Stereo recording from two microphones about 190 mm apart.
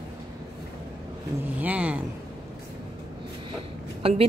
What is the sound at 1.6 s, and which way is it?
Speech, 10° right (ahead or behind).